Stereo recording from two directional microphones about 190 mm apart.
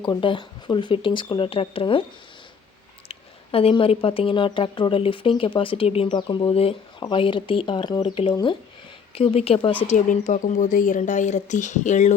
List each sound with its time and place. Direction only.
0.0 s speech: 25° left (ahead or behind)
3.1 s speech: 30° left (ahead or behind)